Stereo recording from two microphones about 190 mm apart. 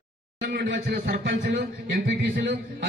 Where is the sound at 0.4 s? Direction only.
65° right (ahead or behind).